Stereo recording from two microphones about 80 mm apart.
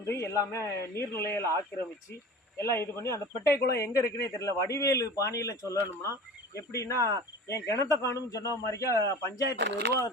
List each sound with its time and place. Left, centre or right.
0.0 s a man's voice: left
2.6 s a man's voice: left